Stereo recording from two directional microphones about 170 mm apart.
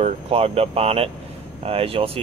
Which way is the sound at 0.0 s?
35° right (ahead or behind).